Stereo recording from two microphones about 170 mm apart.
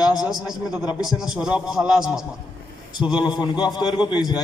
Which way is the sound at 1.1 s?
5° right (ahead or behind).